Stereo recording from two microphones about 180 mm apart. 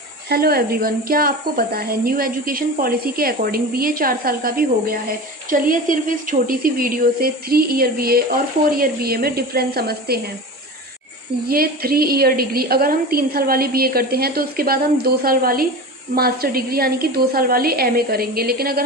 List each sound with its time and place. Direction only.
0.3 s a woman's voice: 60° right (ahead or behind)
11.4 s a woman's voice: 55° right (ahead or behind)